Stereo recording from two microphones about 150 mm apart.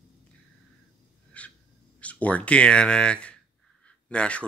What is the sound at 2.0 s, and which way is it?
Speech, 10° left (ahead or behind).